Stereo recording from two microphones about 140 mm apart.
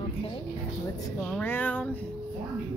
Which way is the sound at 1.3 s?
10° left (ahead or behind).